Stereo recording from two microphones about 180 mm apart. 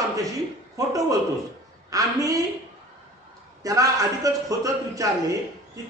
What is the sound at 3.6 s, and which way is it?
Speech, 20° right (ahead or behind).